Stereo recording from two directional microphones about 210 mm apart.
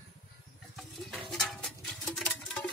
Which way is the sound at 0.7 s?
Centre (ahead or behind).